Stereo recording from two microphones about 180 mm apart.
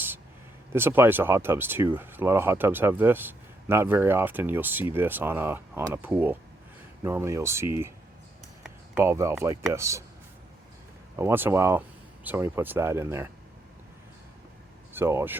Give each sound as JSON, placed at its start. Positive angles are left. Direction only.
{"t": 0.7, "sound": "speech", "side_deg": -15}
{"t": 9.0, "sound": "speech", "side_deg": -15}
{"t": 11.2, "sound": "speech", "side_deg": -15}
{"t": 14.9, "sound": "speech", "side_deg": -15}